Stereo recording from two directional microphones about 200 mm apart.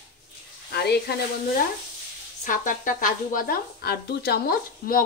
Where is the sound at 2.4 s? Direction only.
40° left (ahead or behind).